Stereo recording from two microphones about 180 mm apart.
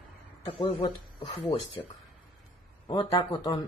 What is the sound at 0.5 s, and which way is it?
Speech, 30° left (ahead or behind).